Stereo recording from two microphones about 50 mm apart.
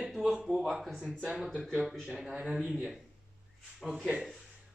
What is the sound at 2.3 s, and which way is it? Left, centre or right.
Speech, centre.